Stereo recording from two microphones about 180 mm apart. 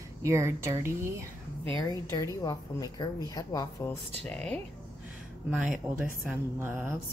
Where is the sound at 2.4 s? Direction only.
20° left (ahead or behind).